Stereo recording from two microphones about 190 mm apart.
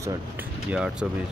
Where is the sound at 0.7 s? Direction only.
5° right (ahead or behind).